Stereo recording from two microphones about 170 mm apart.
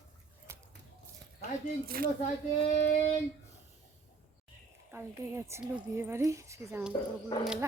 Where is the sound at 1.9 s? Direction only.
60° right (ahead or behind).